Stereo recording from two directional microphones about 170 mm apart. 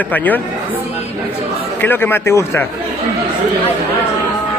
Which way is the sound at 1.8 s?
10° left (ahead or behind).